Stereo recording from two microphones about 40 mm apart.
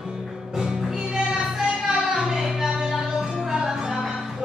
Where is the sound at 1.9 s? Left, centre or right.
Centre.